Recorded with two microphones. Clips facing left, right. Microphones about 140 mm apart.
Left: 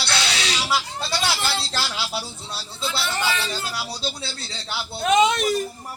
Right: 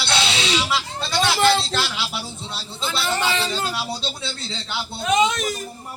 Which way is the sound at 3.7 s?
25° right (ahead or behind).